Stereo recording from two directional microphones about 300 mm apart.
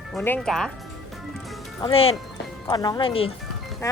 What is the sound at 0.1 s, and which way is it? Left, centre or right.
Speech, centre.